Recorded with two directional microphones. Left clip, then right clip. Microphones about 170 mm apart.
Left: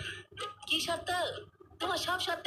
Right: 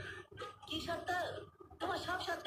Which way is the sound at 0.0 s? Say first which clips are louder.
Left 7 dB; 45° left (ahead or behind).